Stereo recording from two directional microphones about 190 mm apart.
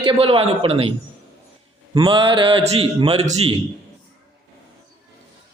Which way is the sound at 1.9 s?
25° right (ahead or behind).